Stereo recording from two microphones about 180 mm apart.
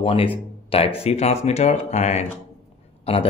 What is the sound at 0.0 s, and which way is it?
A man's voice, 30° left (ahead or behind).